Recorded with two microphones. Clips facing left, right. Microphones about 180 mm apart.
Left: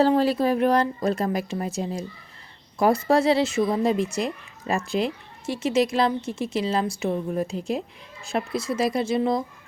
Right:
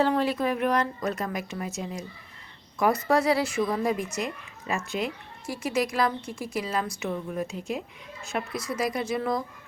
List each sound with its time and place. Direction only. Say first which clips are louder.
0.0 s speech: left 5 dB; 35° left (ahead or behind)